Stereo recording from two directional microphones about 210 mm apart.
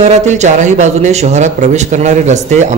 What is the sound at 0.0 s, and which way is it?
A man's voice, 30° right (ahead or behind).